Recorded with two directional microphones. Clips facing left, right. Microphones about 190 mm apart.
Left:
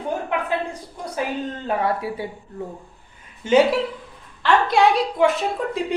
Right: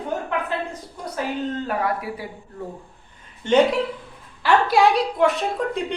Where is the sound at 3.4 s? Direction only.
5° left (ahead or behind).